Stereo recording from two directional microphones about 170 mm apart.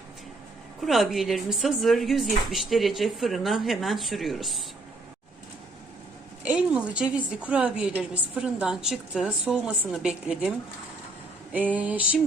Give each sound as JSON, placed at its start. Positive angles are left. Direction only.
{"t": 0.8, "sound": "a woman's voice", "side_deg": 0}
{"t": 6.4, "sound": "a woman's voice", "side_deg": -5}
{"t": 11.5, "sound": "a sound", "side_deg": -10}